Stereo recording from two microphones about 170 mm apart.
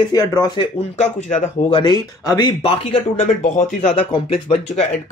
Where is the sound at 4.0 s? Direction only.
30° left (ahead or behind).